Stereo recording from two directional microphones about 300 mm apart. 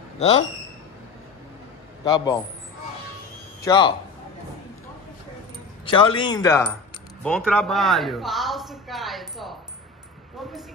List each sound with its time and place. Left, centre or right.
0.2 s speech: left
2.0 s speech: centre
3.6 s speech: centre
5.9 s speech: centre